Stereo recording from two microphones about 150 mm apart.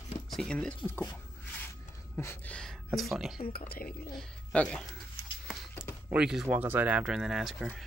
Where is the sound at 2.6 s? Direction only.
Centre (ahead or behind).